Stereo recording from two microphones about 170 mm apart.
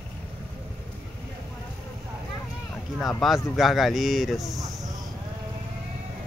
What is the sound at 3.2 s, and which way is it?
Speech, centre (ahead or behind).